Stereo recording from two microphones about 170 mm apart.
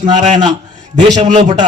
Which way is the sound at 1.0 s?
25° right (ahead or behind).